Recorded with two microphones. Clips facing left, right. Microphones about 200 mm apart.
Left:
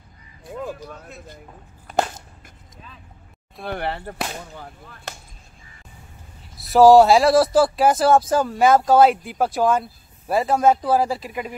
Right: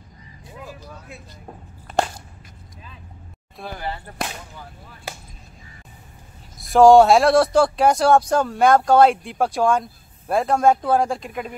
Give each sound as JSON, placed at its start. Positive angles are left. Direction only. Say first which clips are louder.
{"t": 0.5, "sound": "speech", "louder": "left 8 dB", "side_deg": 55}
{"t": 3.7, "sound": "speech", "louder": "left 4 dB", "side_deg": 65}
{"t": 6.6, "sound": "speech", "louder": "even", "side_deg": 0}